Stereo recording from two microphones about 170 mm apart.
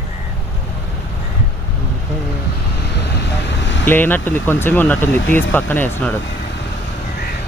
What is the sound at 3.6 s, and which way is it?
Vehicle, 90° left.